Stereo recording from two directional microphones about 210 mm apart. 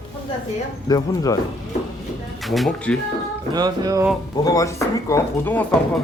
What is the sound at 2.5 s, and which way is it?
Speech, centre (ahead or behind).